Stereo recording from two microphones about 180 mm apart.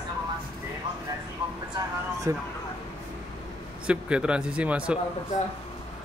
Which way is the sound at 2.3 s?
15° right (ahead or behind).